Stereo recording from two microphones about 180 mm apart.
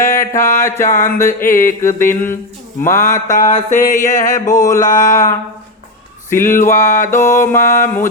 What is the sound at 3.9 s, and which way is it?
Speech, 45° left (ahead or behind).